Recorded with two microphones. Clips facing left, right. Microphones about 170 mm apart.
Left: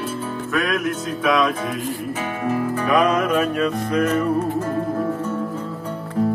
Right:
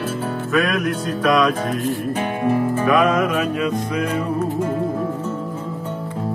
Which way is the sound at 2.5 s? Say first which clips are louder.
Right 1 dB; 25° right (ahead or behind).